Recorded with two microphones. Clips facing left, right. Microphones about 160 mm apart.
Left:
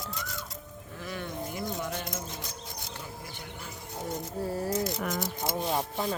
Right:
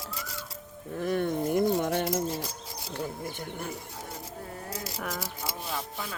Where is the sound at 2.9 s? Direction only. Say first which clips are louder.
Right 7 dB; 50° right (ahead or behind).